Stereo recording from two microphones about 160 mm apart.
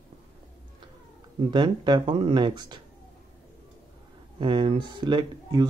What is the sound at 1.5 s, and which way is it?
Speech, 30° right (ahead or behind).